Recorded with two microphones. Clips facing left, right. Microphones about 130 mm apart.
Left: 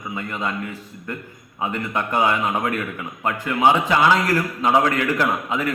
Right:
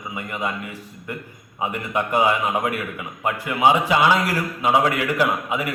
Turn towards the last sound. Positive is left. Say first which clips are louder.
# even
turn(degrees=-10)  # may be behind; listen again after turning